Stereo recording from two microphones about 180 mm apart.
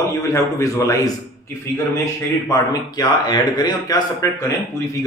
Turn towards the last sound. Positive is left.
turn(degrees=20)  # may be behind; listen again after turning